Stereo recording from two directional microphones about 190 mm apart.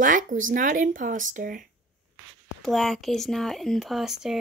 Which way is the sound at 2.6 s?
Centre (ahead or behind).